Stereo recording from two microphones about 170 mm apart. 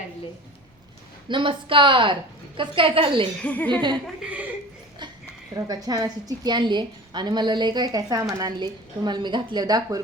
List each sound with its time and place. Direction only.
1.3 s a woman's voice: 30° right (ahead or behind)
3.4 s speech: 10° left (ahead or behind)
3.7 s a woman's voice: 25° right (ahead or behind)
4.0 s speech: 5° right (ahead or behind)
5.5 s a woman's voice: 20° right (ahead or behind)